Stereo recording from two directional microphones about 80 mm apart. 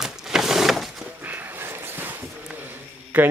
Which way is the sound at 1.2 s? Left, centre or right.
Right.